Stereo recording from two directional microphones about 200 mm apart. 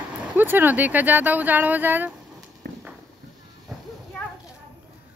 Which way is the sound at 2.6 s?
55° right (ahead or behind).